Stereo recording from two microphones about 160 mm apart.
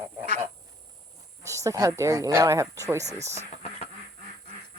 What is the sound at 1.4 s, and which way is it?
Speech, 20° right (ahead or behind).